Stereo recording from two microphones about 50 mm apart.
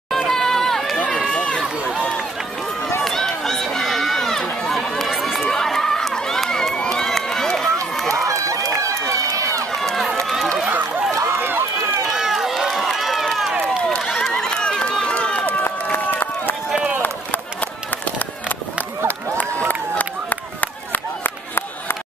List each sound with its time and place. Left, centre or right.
0.1 s run: centre
0.9 s run: left
3.0 s run: centre
4.7 s chatter: centre
5.5 s run: centre
6.8 s crowd: centre
8.1 s run: right
9.8 s run: centre
11.2 s run: right
12.1 s run: centre
15.4 s run: left
19.7 s a sound: left